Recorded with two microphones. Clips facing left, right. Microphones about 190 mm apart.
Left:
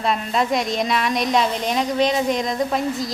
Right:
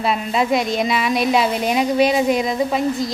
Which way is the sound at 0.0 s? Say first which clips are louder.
Right 2 dB; 5° right (ahead or behind).